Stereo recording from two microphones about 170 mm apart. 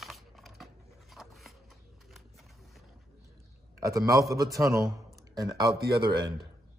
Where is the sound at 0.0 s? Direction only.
Centre (ahead or behind).